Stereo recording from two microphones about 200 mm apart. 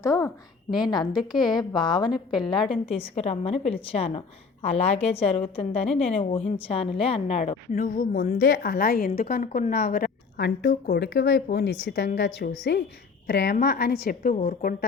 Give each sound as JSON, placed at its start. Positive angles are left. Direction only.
{"t": 0.0, "sound": "a woman's voice", "side_deg": 15}
{"t": 2.1, "sound": "a woman's voice", "side_deg": 0}
{"t": 2.5, "sound": "a woman's voice", "side_deg": 25}
{"t": 10.8, "sound": "speech", "side_deg": 60}
{"t": 11.3, "sound": "a woman's voice", "side_deg": 50}